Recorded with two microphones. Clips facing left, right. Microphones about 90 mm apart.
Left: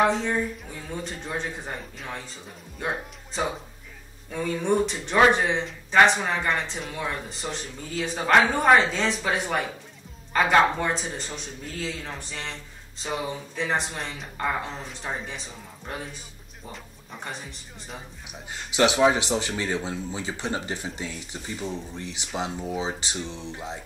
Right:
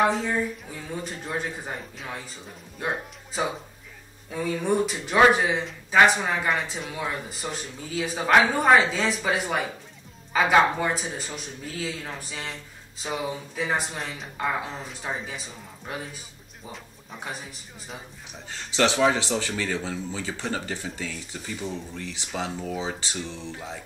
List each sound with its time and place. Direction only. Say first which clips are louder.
0.0 s speech: even; centre (ahead or behind)
18.5 s speech: left 1 dB; 15° left (ahead or behind)